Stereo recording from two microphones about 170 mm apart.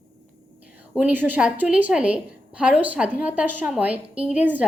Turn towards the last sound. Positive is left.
turn(degrees=-10)  # may be behind; listen again after turning